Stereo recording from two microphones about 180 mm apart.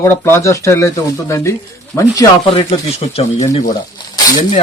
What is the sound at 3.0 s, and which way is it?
Speech, 35° left (ahead or behind).